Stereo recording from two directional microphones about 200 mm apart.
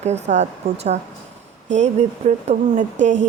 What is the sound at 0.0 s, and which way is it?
Speech, 35° right (ahead or behind).